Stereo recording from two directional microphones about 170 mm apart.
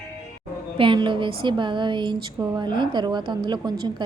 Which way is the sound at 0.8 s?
30° right (ahead or behind).